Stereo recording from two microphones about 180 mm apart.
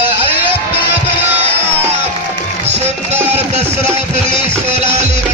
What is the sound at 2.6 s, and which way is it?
Music, 35° right (ahead or behind).